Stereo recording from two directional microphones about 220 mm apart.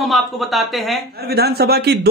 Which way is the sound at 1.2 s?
45° right (ahead or behind).